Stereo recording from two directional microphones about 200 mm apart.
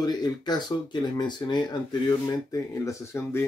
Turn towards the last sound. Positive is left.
turn(degrees=10)  # may be behind; listen again after turning